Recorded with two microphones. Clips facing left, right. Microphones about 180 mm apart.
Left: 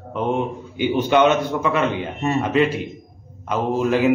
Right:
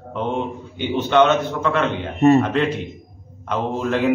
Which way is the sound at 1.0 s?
10° left (ahead or behind).